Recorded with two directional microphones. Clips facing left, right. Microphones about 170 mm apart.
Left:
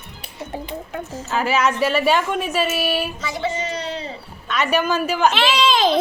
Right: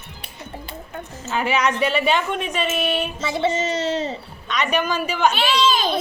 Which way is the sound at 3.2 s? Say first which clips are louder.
Right 3 dB; 25° right (ahead or behind).